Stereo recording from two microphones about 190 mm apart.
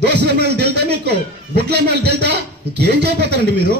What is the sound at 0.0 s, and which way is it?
A man's voice, 60° right (ahead or behind).